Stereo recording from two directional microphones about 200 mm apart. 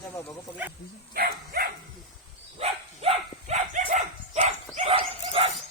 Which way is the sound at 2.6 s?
30° right (ahead or behind).